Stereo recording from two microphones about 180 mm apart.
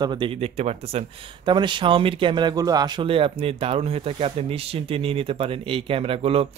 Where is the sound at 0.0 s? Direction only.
25° right (ahead or behind).